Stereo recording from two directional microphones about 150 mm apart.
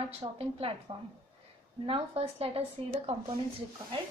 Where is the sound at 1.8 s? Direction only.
40° right (ahead or behind).